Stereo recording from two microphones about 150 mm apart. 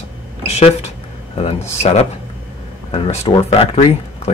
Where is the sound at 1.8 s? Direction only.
45° left (ahead or behind).